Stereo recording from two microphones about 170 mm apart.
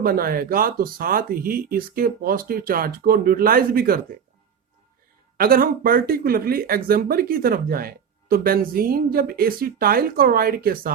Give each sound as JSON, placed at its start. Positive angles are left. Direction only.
{"t": 0.0, "sound": "speech", "side_deg": -60}
{"t": 5.4, "sound": "speech", "side_deg": -60}